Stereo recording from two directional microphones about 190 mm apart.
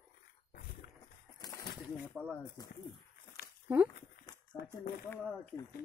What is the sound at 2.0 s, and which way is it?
Snake, 10° right (ahead or behind).